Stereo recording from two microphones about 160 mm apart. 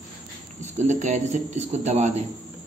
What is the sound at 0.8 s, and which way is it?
Speech, 50° right (ahead or behind).